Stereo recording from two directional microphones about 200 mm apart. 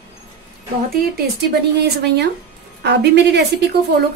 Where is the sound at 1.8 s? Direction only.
55° right (ahead or behind).